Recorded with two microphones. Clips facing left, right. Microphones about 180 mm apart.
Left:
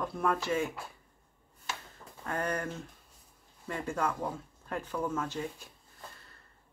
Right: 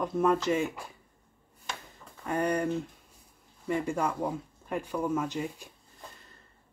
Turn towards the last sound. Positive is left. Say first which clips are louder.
# right 3 dB
turn(degrees=-15)  # may be behind; listen again after turning